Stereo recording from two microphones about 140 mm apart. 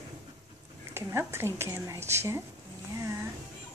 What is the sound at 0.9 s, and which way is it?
Speech, 20° right (ahead or behind).